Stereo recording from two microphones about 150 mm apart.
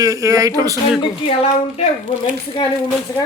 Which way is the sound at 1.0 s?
40° left (ahead or behind).